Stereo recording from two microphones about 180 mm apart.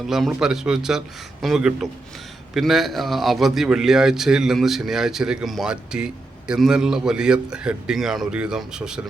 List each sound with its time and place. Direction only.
0.0 s speech: centre (ahead or behind)